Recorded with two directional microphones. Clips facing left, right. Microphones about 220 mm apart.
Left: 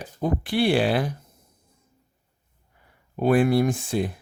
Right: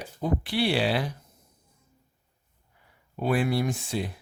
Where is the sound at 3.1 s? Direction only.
50° left (ahead or behind).